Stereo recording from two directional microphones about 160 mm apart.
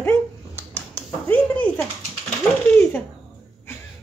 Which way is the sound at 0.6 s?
10° left (ahead or behind).